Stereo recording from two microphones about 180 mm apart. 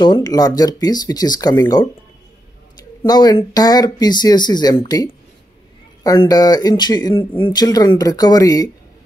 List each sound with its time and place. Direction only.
0.0 s speech: 25° left (ahead or behind)
3.0 s speech: 20° left (ahead or behind)